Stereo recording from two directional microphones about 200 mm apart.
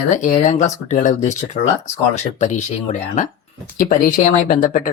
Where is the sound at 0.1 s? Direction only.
40° left (ahead or behind).